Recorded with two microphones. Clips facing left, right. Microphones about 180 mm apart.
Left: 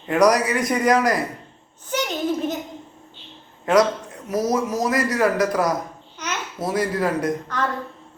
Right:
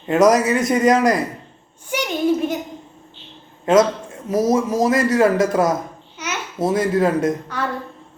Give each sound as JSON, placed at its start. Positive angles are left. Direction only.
{"t": 0.1, "sound": "a man's voice", "side_deg": -25}
{"t": 1.9, "sound": "a sound", "side_deg": -10}
{"t": 3.7, "sound": "a man's voice", "side_deg": -25}
{"t": 7.4, "sound": "a woman's voice", "side_deg": -10}